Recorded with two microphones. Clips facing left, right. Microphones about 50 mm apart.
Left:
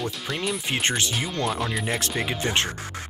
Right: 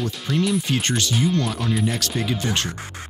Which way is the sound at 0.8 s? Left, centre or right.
Left.